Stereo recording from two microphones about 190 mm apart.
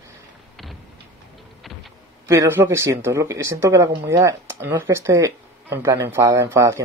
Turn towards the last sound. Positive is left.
turn(degrees=-15)  # may be behind; listen again after turning